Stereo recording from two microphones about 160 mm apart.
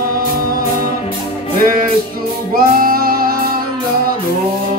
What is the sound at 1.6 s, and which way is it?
Music, 60° right (ahead or behind).